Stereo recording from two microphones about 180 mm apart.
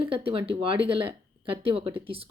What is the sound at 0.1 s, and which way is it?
Speech, 30° right (ahead or behind).